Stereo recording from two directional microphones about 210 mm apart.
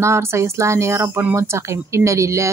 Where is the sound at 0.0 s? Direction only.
15° right (ahead or behind).